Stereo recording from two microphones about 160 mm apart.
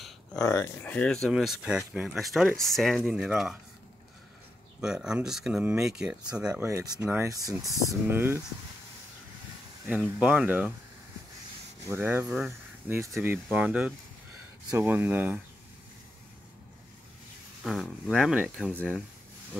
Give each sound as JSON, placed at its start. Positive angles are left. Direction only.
{"t": 0.4, "sound": "speech", "side_deg": 15}
{"t": 4.7, "sound": "speech", "side_deg": -5}
{"t": 6.6, "sound": "speech", "side_deg": -15}
{"t": 10.1, "sound": "speech", "side_deg": -5}
{"t": 11.9, "sound": "speech", "side_deg": -15}
{"t": 18.1, "sound": "speech", "side_deg": 0}
{"t": 18.7, "sound": "speech", "side_deg": 10}